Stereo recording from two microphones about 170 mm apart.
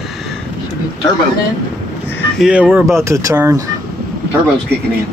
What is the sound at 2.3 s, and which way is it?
Speech, 5° right (ahead or behind).